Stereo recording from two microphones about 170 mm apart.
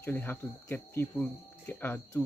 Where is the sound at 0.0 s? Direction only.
10° left (ahead or behind).